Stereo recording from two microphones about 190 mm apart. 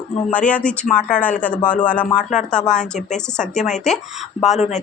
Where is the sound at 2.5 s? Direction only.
5° left (ahead or behind).